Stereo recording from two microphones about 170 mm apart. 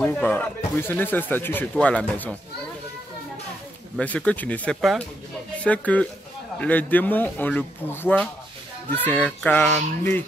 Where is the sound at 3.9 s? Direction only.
10° left (ahead or behind).